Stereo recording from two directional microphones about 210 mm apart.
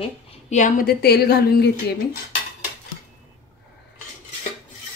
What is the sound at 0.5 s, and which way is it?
A woman's voice, 35° left (ahead or behind).